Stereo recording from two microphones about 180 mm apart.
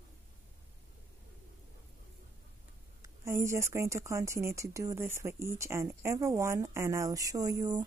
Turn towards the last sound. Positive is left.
turn(degrees=-20)  # may be behind; listen again after turning